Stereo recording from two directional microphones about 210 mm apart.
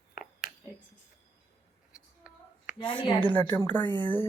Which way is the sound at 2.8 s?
25° left (ahead or behind).